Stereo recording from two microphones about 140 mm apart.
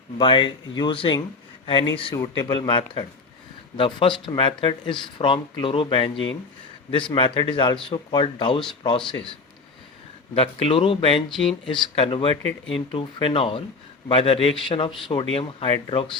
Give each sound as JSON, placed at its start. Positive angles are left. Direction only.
{"t": 0.2, "sound": "speech", "side_deg": 35}
{"t": 7.1, "sound": "speech", "side_deg": 35}
{"t": 10.3, "sound": "speech", "side_deg": 45}